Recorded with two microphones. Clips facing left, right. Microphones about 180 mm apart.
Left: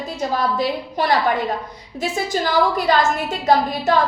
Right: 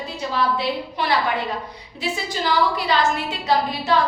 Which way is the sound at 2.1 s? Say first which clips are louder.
Left 3 dB; 45° left (ahead or behind).